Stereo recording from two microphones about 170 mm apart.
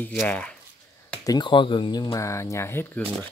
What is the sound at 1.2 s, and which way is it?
Speech, 25° left (ahead or behind).